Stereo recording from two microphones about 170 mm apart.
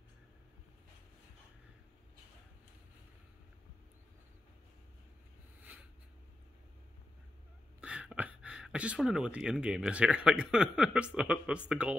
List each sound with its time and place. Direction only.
7.8 s speech: 5° right (ahead or behind)